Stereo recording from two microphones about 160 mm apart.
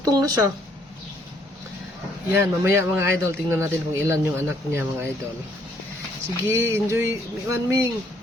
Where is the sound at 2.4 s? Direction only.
15° right (ahead or behind).